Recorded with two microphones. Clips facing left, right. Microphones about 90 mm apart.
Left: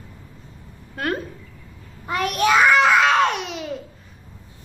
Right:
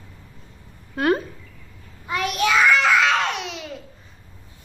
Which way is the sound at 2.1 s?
50° left (ahead or behind).